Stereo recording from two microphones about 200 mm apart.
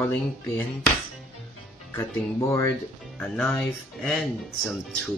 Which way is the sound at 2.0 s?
15° left (ahead or behind).